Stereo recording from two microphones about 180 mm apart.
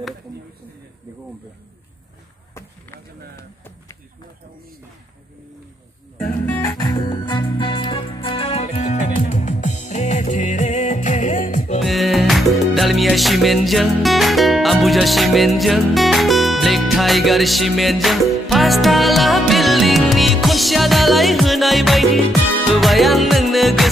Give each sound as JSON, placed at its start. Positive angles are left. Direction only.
{"t": 2.5, "sound": "chop", "side_deg": 15}
{"t": 6.4, "sound": "music", "side_deg": 10}
{"t": 6.8, "sound": "music", "side_deg": 25}
{"t": 11.8, "sound": "music", "side_deg": 0}